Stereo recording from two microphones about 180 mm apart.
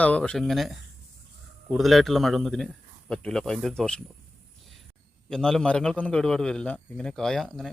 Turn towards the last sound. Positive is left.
turn(degrees=0)  # may be behind; listen again after turning